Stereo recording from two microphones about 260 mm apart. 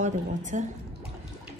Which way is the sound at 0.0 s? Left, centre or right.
Right.